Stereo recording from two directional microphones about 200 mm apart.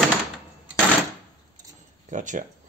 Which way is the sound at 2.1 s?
40° right (ahead or behind).